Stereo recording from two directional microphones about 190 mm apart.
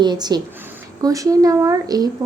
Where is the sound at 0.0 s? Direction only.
20° right (ahead or behind).